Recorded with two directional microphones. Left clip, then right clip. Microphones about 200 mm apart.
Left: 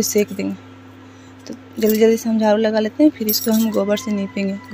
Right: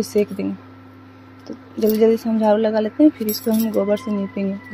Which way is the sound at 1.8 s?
Centre (ahead or behind).